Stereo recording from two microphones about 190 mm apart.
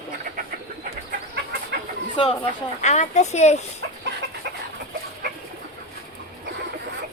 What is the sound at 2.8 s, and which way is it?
Speech, 40° left (ahead or behind).